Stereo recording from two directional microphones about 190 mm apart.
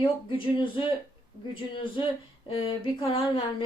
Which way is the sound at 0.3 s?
25° left (ahead or behind).